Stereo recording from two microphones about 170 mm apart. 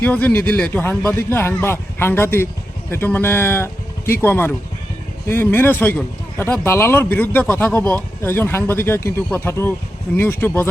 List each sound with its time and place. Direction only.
0.0 s a man's voice: 10° left (ahead or behind)